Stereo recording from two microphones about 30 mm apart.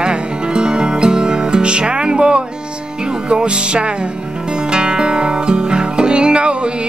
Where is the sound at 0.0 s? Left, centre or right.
Right.